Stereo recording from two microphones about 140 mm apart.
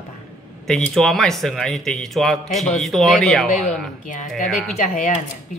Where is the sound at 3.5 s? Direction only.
60° left (ahead or behind).